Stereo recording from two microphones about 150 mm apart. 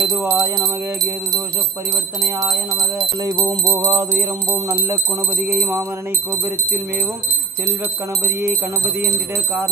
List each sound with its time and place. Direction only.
0.0 s bell: 25° right (ahead or behind)
5.5 s speech: 15° right (ahead or behind)
8.8 s speech: 15° right (ahead or behind)